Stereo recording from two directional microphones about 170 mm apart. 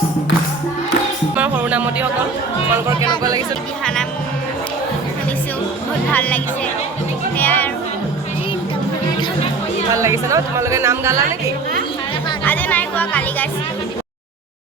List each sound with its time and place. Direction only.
1.4 s music: 10° right (ahead or behind)
6.1 s speech: 10° left (ahead or behind)
7.3 s music: 10° left (ahead or behind)
9.9 s speech: 15° right (ahead or behind)
12.5 s speech: 10° left (ahead or behind)